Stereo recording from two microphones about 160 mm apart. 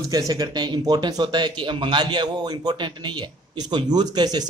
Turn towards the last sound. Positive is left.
turn(degrees=-25)  # may be behind; listen again after turning